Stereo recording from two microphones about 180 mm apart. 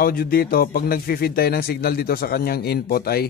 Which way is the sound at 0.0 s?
55° left (ahead or behind).